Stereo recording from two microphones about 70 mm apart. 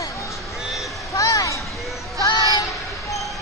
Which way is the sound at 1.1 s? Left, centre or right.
Left.